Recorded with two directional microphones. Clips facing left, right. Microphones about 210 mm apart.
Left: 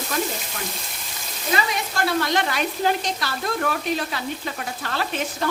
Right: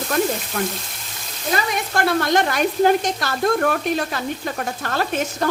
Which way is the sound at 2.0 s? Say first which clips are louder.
Right 4 dB; 50° right (ahead or behind).